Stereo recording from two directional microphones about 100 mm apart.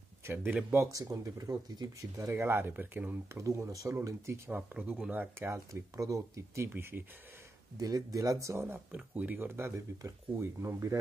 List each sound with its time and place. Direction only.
0.2 s a sound: 20° right (ahead or behind)
0.7 s speech: 30° right (ahead or behind)
3.3 s speech: 30° right (ahead or behind)
4.5 s speech: 10° right (ahead or behind)
5.7 s speech: 35° right (ahead or behind)
7.8 s speech: 35° right (ahead or behind)
8.9 s speech: 15° right (ahead or behind); by 11.0 s 30° right (ahead or behind)